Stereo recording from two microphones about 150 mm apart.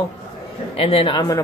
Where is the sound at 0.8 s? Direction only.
40° left (ahead or behind).